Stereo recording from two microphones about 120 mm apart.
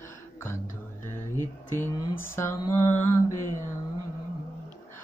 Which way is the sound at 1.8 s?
20° left (ahead or behind).